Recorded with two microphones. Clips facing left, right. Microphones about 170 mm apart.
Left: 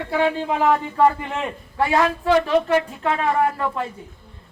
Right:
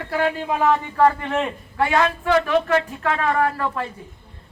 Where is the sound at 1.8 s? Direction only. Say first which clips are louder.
Left 1 dB; 20° left (ahead or behind).